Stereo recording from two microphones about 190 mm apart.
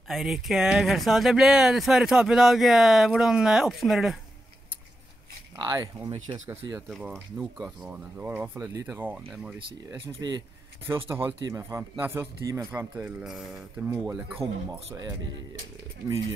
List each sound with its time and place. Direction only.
0.1 s speech: centre (ahead or behind)
5.6 s speech: 25° right (ahead or behind)
6.1 s speech: 35° right (ahead or behind)
6.9 s speech: 5° right (ahead or behind)
9.8 s speech: 20° right (ahead or behind); by 13.8 s centre (ahead or behind)
13.8 s speech: 10° right (ahead or behind)